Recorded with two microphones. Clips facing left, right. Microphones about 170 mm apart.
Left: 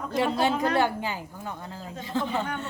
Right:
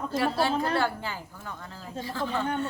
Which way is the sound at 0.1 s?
20° left (ahead or behind).